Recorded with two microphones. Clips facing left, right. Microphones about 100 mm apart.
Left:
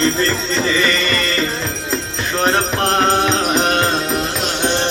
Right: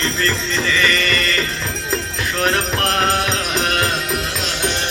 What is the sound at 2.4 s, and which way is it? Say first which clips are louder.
Music: left 3 dB; 30° left (ahead or behind).